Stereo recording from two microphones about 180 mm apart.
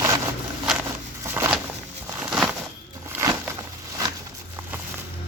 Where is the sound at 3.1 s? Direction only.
15° right (ahead or behind).